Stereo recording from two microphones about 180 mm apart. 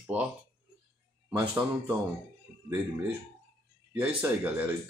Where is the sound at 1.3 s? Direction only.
5° right (ahead or behind).